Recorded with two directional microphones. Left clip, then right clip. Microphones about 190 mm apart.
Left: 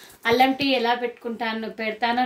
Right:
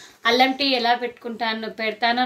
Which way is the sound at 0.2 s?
Centre (ahead or behind).